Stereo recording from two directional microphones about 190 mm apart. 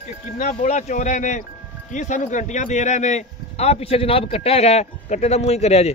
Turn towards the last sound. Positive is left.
turn(degrees=35)  # may be behind; listen again after turning